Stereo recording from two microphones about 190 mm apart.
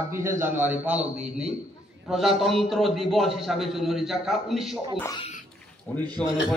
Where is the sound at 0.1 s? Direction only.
15° right (ahead or behind).